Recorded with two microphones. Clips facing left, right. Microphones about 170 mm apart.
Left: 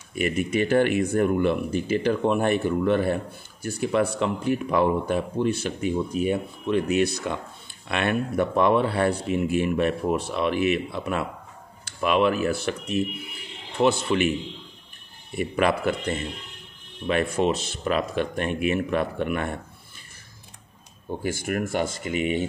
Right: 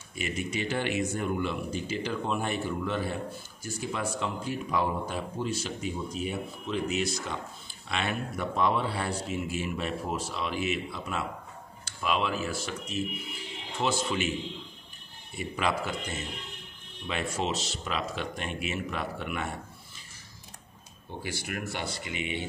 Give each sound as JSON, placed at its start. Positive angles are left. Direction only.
{"t": 0.1, "sound": "speech", "side_deg": 55}
{"t": 15.3, "sound": "speech", "side_deg": 60}
{"t": 21.2, "sound": "speech", "side_deg": 50}